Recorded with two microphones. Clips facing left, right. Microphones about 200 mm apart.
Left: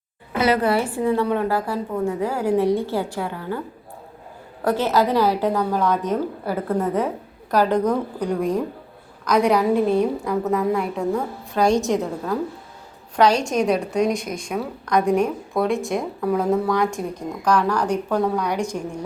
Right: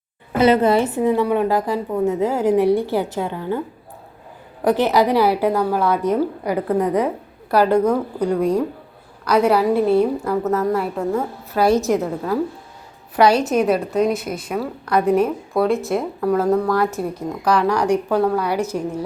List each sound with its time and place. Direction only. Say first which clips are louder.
0.3 s a woman's voice: right 4 dB; 25° right (ahead or behind)
4.6 s a woman's voice: right 3 dB; 15° right (ahead or behind)